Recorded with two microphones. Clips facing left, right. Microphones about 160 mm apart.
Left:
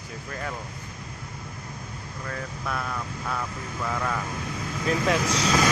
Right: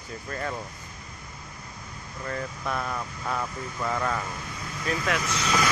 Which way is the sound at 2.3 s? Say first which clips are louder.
Right 2 dB; 5° right (ahead or behind).